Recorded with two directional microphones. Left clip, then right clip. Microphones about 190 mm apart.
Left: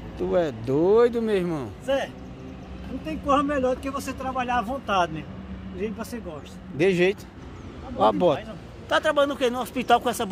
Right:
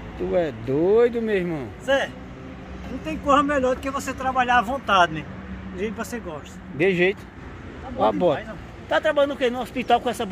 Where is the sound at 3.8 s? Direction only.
10° left (ahead or behind).